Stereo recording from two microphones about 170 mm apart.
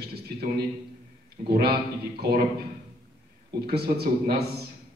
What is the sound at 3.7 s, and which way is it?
Speech, 70° right (ahead or behind).